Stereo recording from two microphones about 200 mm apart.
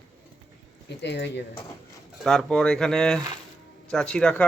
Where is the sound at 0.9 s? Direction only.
60° left (ahead or behind).